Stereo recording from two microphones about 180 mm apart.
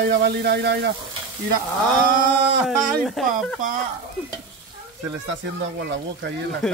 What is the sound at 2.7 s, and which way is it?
Speech, centre (ahead or behind).